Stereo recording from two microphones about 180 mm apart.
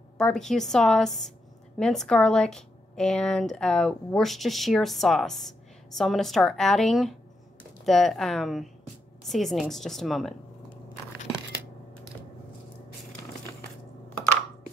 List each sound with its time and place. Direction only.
0.2 s speech: 5° left (ahead or behind)